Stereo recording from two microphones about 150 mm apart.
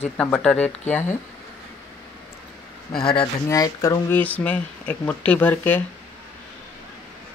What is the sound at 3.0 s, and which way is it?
Speech, 35° left (ahead or behind).